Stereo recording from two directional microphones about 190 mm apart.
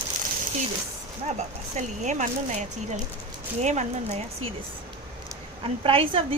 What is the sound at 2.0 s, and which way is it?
A woman's voice, 40° right (ahead or behind).